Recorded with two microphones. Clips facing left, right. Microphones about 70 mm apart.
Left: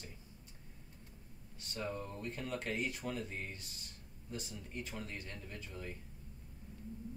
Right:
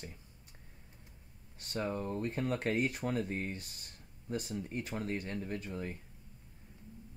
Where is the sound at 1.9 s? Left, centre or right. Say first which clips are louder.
Right 6 dB; right.